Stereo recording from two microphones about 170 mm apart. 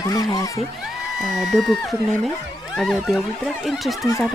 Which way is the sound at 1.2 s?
Centre (ahead or behind).